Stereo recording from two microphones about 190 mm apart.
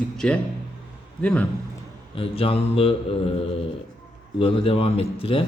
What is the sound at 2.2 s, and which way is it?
Speech, 30° left (ahead or behind).